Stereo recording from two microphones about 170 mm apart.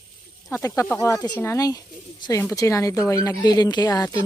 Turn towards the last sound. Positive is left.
turn(degrees=20)  # may be behind; listen again after turning